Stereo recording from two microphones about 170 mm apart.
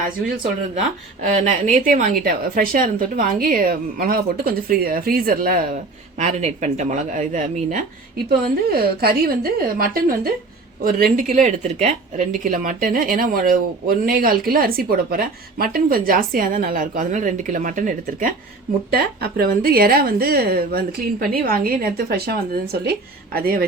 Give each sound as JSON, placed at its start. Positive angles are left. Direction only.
{"t": 1.4, "sound": "speech", "side_deg": -45}
{"t": 6.1, "sound": "speech", "side_deg": -40}
{"t": 8.7, "sound": "speech", "side_deg": -65}
{"t": 11.4, "sound": "speech", "side_deg": -35}